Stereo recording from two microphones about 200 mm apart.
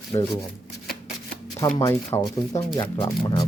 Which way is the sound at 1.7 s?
15° left (ahead or behind).